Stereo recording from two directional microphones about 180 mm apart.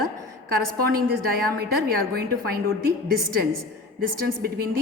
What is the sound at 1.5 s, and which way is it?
A woman's voice, 55° right (ahead or behind).